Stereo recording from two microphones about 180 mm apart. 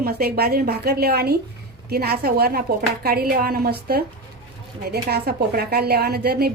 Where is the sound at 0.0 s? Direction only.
60° right (ahead or behind).